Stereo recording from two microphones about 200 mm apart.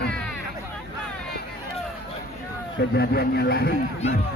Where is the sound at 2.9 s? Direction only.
55° left (ahead or behind).